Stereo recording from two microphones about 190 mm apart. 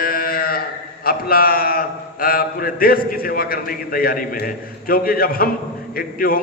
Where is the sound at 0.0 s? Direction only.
50° left (ahead or behind).